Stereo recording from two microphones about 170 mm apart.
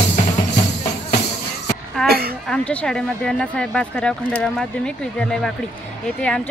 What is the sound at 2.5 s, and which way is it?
Speech, 5° left (ahead or behind).